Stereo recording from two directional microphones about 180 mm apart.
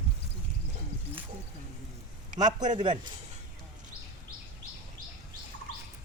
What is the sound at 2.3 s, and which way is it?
Speech, 20° right (ahead or behind).